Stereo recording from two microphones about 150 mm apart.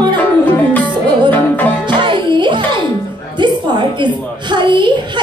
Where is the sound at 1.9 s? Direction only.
35° right (ahead or behind).